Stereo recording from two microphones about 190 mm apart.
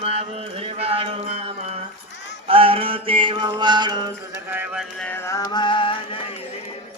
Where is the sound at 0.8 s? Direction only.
30° right (ahead or behind).